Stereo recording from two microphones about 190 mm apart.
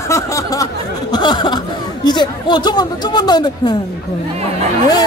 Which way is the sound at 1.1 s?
20° left (ahead or behind).